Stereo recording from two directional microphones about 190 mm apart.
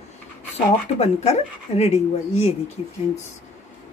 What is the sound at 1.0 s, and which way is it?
Speech, 35° left (ahead or behind).